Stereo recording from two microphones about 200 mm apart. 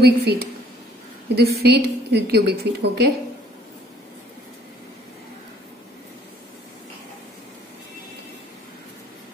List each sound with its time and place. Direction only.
0.0 s a woman's voice: 55° right (ahead or behind)